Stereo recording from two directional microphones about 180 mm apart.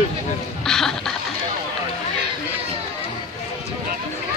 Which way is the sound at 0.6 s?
5° left (ahead or behind).